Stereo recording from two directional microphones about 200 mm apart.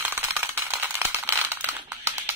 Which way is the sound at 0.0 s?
10° right (ahead or behind).